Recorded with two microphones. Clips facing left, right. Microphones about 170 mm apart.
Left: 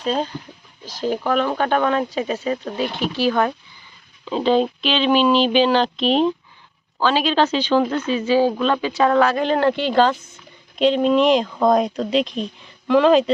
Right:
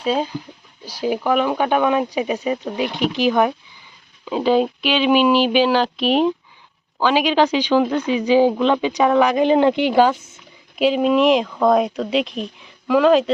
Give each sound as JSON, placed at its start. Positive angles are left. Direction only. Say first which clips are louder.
{"t": 0.0, "sound": "speech", "louder": "right 2 dB", "side_deg": -10}